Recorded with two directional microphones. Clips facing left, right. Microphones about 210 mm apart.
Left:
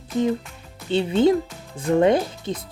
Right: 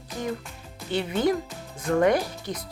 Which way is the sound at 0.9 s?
25° left (ahead or behind).